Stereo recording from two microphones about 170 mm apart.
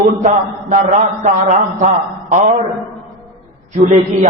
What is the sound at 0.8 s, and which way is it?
A man's voice, 45° right (ahead or behind).